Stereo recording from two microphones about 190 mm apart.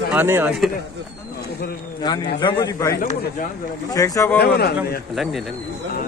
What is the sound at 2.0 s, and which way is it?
A man's voice, 20° left (ahead or behind).